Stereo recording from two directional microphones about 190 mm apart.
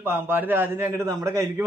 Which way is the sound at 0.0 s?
10° right (ahead or behind).